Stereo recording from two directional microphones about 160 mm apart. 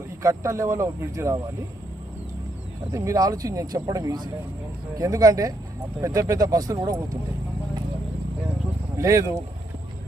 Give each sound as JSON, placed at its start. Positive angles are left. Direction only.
{"t": 0.2, "sound": "speech", "side_deg": -20}
{"t": 2.9, "sound": "speech", "side_deg": -20}
{"t": 9.0, "sound": "speech", "side_deg": -20}